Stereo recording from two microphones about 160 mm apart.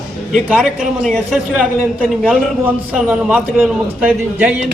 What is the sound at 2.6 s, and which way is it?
A man's voice, 5° right (ahead or behind).